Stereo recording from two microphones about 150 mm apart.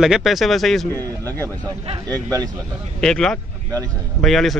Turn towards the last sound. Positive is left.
turn(degrees=0)  # may be behind; listen again after turning